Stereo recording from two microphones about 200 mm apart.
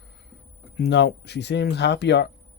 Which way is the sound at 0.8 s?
60° left (ahead or behind).